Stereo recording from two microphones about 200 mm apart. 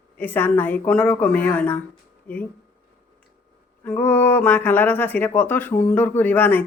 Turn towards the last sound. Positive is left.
turn(degrees=10)  # may be behind; listen again after turning